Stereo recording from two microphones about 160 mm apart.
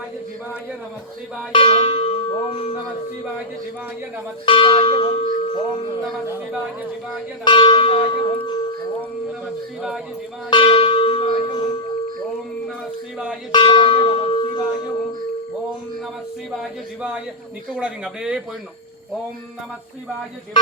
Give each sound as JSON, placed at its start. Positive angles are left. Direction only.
{"t": 1.5, "sound": "church bell", "side_deg": 35}
{"t": 4.4, "sound": "church bell", "side_deg": 30}
{"t": 6.2, "sound": "speech", "side_deg": -15}
{"t": 7.4, "sound": "zither", "side_deg": 30}
{"t": 8.4, "sound": "speech", "side_deg": 30}
{"t": 10.5, "sound": "church bell", "side_deg": 30}
{"t": 13.5, "sound": "bell", "side_deg": 25}
{"t": 16.5, "sound": "singing", "side_deg": -5}
{"t": 17.7, "sound": "speech", "side_deg": -5}